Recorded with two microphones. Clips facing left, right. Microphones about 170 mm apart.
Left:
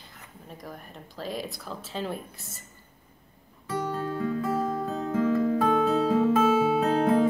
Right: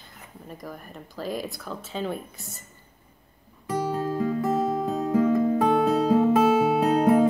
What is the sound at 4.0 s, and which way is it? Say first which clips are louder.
Music: right 3 dB; 35° right (ahead or behind).